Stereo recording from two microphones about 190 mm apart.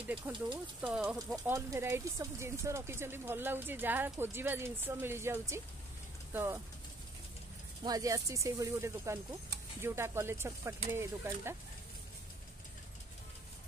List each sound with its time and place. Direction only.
0.3 s speech: 15° right (ahead or behind)
1.3 s speech: 15° right (ahead or behind)
7.8 s speech: 20° right (ahead or behind)